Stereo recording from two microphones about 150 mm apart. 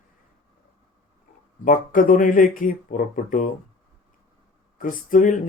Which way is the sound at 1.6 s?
65° left (ahead or behind).